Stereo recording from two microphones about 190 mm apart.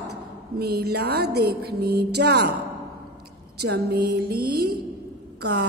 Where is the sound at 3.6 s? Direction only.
60° right (ahead or behind).